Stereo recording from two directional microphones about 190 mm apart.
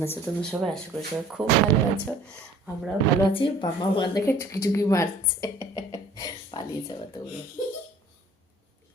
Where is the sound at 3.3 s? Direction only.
25° left (ahead or behind).